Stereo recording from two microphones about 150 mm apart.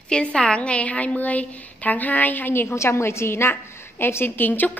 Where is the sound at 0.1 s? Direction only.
5° left (ahead or behind).